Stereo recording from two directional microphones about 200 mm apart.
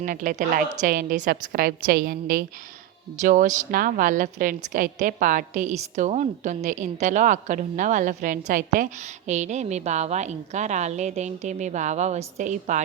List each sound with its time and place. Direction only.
0.0 s a woman's voice: 40° right (ahead or behind)